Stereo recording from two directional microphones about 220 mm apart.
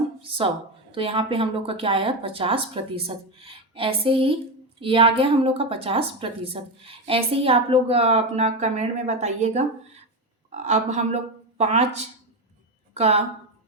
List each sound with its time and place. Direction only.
0.2 s a woman's voice: 25° right (ahead or behind)